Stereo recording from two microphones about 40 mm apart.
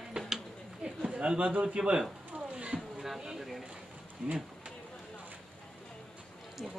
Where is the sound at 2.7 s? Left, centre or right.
Centre.